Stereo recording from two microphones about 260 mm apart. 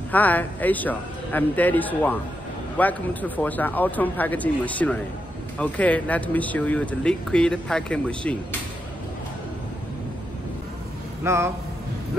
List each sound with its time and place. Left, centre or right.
0.1 s speech: centre
11.2 s speech: centre